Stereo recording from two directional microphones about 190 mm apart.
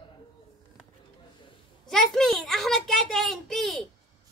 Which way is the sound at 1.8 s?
Centre (ahead or behind).